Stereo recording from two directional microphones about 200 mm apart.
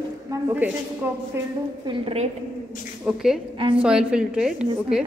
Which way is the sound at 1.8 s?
30° right (ahead or behind).